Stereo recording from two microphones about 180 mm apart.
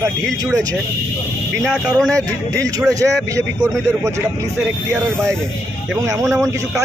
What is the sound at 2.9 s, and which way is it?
Speech, 15° right (ahead or behind).